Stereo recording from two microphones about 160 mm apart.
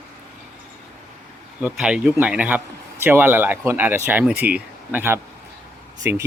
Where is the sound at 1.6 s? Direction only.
5° right (ahead or behind).